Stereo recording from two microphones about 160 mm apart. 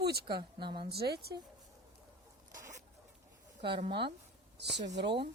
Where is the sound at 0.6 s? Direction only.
30° right (ahead or behind).